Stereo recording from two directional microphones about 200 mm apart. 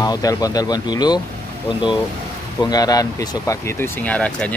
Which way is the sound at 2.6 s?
20° left (ahead or behind).